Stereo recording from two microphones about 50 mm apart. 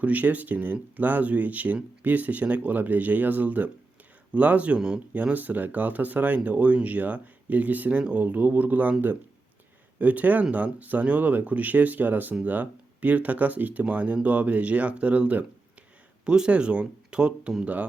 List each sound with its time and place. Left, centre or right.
0.0 s speech: right
8.2 s speech: right
16.2 s speech: centre